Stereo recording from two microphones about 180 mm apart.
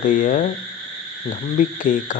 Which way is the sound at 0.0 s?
45° left (ahead or behind).